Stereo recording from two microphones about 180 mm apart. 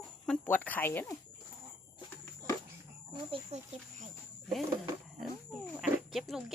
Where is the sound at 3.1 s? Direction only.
30° right (ahead or behind).